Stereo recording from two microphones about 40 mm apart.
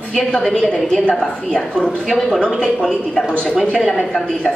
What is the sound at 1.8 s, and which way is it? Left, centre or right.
Speech, centre.